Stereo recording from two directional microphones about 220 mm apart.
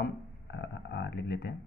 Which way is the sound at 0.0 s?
55° left (ahead or behind).